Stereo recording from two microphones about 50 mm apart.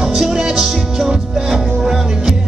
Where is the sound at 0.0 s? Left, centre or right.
Centre.